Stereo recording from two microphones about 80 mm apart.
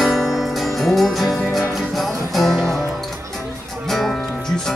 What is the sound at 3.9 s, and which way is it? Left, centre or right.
Music, centre.